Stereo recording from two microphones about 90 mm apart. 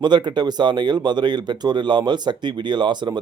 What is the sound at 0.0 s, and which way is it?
Speech, 55° right (ahead or behind).